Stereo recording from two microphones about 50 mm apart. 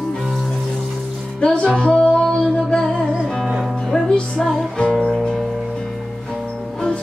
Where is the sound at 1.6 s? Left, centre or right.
Centre.